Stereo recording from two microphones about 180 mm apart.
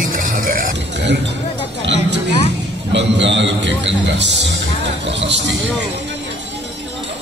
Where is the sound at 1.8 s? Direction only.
80° right.